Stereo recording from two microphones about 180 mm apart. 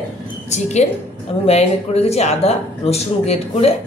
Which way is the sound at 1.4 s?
35° left (ahead or behind).